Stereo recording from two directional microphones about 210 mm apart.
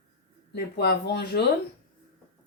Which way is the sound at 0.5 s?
50° left (ahead or behind).